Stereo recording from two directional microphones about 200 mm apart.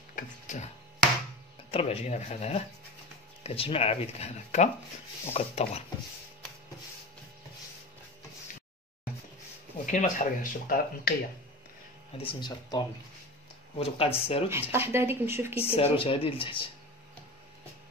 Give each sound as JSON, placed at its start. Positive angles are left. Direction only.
{"t": 0.1, "sound": "music", "side_deg": 40}
{"t": 1.7, "sound": "speech", "side_deg": 30}
{"t": 9.8, "sound": "speech", "side_deg": 40}
{"t": 12.2, "sound": "speech", "side_deg": 25}
{"t": 14.7, "sound": "speech", "side_deg": -10}
{"t": 15.6, "sound": "speech", "side_deg": 30}